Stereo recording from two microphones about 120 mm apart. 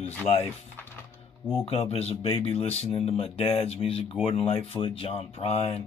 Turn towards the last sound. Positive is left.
turn(degrees=60)  # may be behind; listen again after turning